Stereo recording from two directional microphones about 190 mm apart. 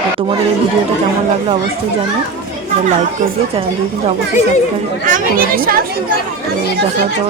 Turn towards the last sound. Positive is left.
turn(degrees=-50)  # may be behind; listen again after turning